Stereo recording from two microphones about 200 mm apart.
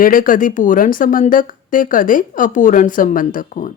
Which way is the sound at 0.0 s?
45° left (ahead or behind).